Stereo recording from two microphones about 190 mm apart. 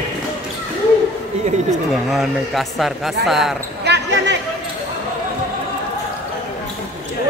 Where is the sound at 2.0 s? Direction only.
Centre (ahead or behind).